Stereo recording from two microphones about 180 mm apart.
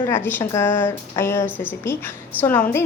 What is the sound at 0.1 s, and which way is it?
Speech, 10° left (ahead or behind).